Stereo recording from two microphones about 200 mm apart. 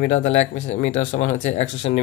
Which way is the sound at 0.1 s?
35° left (ahead or behind).